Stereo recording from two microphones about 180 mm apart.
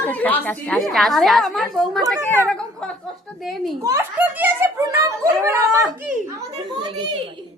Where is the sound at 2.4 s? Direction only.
5° left (ahead or behind).